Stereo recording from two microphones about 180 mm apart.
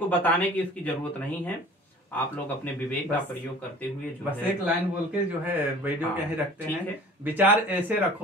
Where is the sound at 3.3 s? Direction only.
10° left (ahead or behind).